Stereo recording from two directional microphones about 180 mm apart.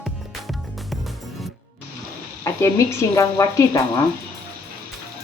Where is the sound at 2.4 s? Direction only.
15° left (ahead or behind).